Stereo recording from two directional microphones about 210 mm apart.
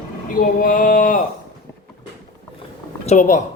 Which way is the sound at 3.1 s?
35° left (ahead or behind).